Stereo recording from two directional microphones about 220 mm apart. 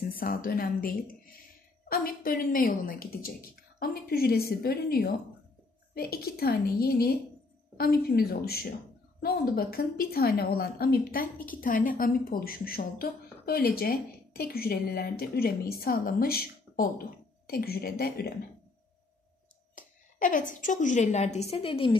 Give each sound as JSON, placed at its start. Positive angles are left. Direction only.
{"t": 0.1, "sound": "a woman's voice", "side_deg": 40}
{"t": 19.7, "sound": "a woman's voice", "side_deg": 35}